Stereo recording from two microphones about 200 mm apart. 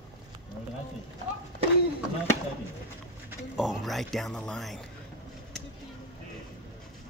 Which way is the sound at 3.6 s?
Centre (ahead or behind).